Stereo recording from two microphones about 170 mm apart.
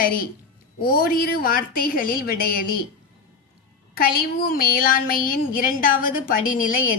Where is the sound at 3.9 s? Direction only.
60° left (ahead or behind).